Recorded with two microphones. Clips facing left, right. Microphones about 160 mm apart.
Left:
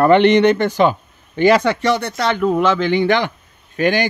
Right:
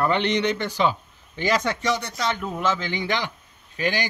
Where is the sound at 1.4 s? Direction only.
65° left (ahead or behind).